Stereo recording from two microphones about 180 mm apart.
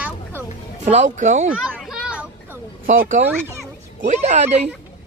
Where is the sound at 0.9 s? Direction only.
45° right (ahead or behind).